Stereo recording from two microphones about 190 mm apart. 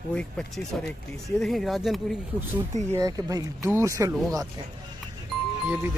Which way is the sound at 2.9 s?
20° right (ahead or behind).